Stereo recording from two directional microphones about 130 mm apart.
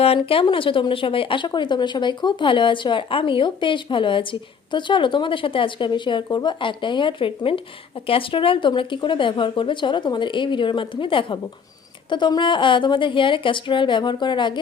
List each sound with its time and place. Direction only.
0.0 s speech: 45° left (ahead or behind)